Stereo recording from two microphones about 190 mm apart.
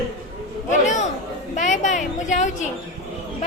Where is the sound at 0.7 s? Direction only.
40° left (ahead or behind).